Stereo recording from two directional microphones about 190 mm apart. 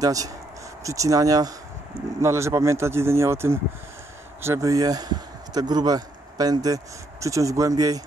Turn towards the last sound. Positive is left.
turn(degrees=-20)  # may be behind; listen again after turning